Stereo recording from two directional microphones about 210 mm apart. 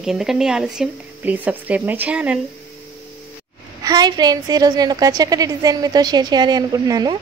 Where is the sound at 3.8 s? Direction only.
20° right (ahead or behind).